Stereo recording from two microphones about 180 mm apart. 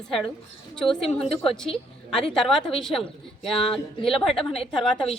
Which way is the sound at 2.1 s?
Centre (ahead or behind).